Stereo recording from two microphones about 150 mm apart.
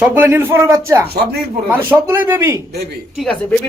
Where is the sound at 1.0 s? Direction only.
90° right.